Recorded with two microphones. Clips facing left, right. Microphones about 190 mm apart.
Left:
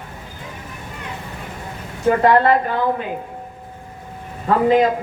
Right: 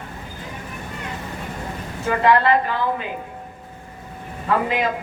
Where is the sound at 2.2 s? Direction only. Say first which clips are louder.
Left 1 dB; 45° left (ahead or behind).